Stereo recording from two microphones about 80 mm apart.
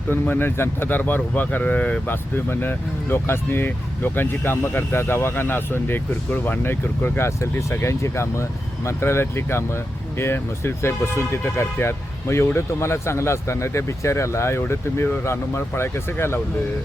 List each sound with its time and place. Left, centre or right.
0.1 s speech: left